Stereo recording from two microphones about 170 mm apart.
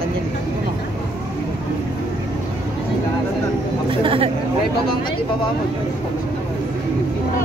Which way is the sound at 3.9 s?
30° right (ahead or behind).